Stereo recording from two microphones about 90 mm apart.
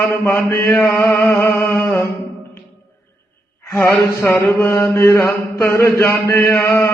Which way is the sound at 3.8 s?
25° left (ahead or behind).